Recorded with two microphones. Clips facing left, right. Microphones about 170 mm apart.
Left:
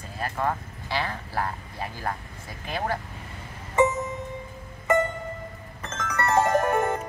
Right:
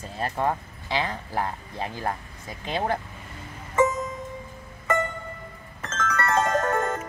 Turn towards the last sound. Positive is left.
turn(degrees=20)  # may be behind; listen again after turning